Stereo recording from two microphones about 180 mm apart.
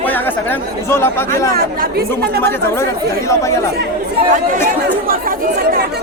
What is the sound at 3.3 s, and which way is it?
Speech, 15° left (ahead or behind).